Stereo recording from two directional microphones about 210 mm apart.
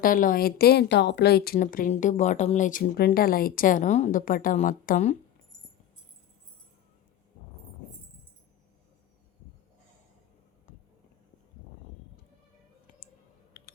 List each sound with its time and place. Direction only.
0.0 s a woman's voice: 40° left (ahead or behind)
13.5 s computer keyboard: 45° left (ahead or behind)